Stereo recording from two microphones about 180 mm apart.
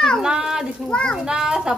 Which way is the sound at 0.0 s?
Centre (ahead or behind).